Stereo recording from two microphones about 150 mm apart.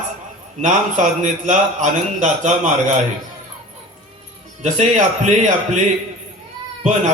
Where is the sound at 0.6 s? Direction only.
55° right (ahead or behind).